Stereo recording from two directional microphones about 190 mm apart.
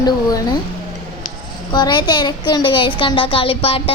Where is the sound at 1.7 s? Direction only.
20° left (ahead or behind).